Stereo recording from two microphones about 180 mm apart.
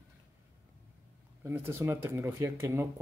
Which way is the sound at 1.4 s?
15° right (ahead or behind).